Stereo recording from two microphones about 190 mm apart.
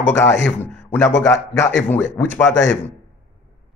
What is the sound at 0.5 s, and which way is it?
A man's voice, centre (ahead or behind).